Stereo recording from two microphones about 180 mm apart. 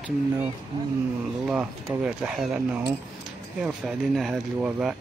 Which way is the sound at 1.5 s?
5° right (ahead or behind).